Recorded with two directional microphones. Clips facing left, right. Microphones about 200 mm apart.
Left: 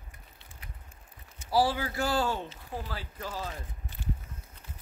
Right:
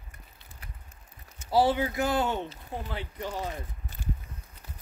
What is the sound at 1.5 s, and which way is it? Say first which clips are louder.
Speech: right 3 dB; 25° right (ahead or behind).